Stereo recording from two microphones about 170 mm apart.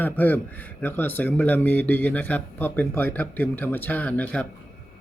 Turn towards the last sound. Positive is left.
turn(degrees=10)  # may be behind; listen again after turning